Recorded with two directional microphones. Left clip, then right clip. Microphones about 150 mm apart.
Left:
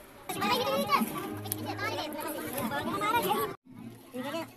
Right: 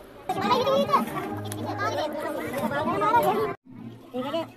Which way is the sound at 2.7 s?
35° left (ahead or behind).